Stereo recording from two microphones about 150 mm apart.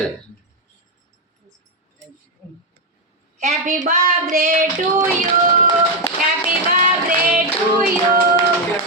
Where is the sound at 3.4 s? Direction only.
55° right (ahead or behind).